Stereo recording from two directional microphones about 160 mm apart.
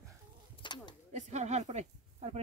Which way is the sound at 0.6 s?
30° left (ahead or behind).